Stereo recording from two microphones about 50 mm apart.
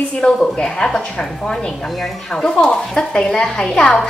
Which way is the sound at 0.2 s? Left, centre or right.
Centre.